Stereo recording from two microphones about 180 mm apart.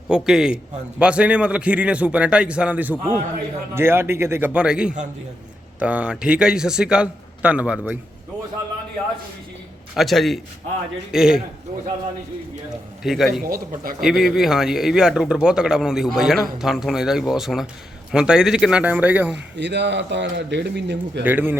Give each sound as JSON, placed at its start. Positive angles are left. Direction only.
{"t": 0.1, "sound": "a man's voice", "side_deg": -5}
{"t": 9.9, "sound": "a man's voice", "side_deg": 0}
{"t": 13.0, "sound": "a man's voice", "side_deg": 0}
{"t": 13.4, "sound": "speech", "side_deg": -55}
{"t": 14.0, "sound": "a man's voice", "side_deg": 0}
{"t": 19.5, "sound": "speech", "side_deg": -75}
{"t": 21.2, "sound": "a man's voice", "side_deg": -10}